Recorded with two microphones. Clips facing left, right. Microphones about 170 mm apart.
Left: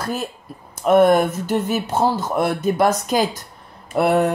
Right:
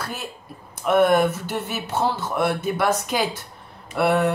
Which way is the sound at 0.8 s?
40° left (ahead or behind).